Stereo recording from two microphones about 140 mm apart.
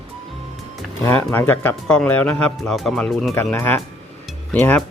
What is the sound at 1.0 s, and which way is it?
Speech, 15° left (ahead or behind).